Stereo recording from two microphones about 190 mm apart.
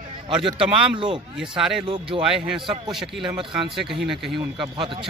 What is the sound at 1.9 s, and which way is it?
Speech, 25° right (ahead or behind).